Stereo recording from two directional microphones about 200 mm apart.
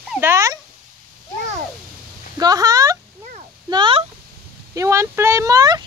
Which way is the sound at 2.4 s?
20° right (ahead or behind).